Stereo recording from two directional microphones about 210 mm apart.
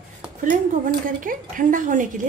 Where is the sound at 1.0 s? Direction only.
40° right (ahead or behind).